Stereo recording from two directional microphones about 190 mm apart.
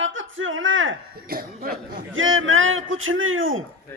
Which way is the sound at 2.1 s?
90° right.